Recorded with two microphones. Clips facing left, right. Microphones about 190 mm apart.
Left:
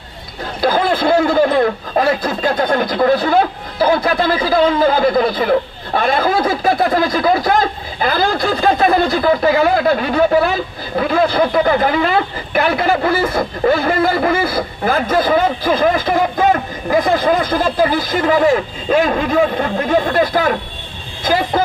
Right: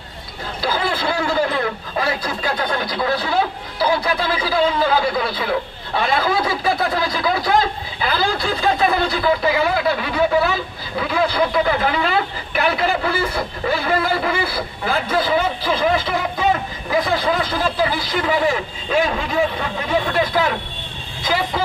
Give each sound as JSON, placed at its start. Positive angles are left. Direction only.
{"t": 0.6, "sound": "a man's voice", "side_deg": 45}